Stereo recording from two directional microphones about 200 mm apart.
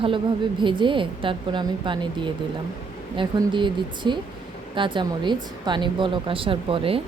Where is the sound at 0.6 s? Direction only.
25° right (ahead or behind).